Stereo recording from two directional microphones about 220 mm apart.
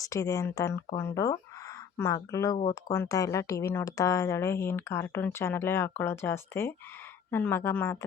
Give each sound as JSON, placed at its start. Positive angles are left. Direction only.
{"t": 0.0, "sound": "speech", "side_deg": 15}